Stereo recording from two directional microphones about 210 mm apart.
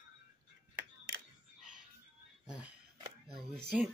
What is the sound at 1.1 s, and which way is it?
Single-lens reflex camera, 90° right.